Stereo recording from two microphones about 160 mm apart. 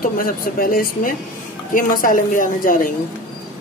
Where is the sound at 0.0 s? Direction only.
60° left (ahead or behind).